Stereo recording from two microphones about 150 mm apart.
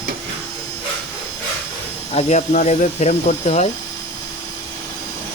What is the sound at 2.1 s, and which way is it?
Speech, 55° left (ahead or behind).